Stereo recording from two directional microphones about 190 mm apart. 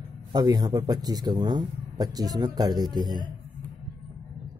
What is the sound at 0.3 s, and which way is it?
A man's voice, 20° right (ahead or behind).